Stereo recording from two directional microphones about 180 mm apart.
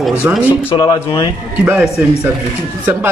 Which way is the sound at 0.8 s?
25° left (ahead or behind).